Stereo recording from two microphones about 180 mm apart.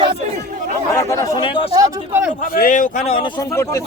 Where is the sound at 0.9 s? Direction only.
20° left (ahead or behind).